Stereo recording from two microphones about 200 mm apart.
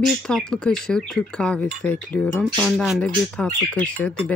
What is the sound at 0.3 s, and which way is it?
Speech, 5° left (ahead or behind).